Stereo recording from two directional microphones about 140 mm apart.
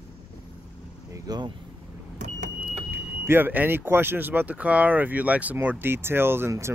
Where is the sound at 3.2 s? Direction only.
15° right (ahead or behind).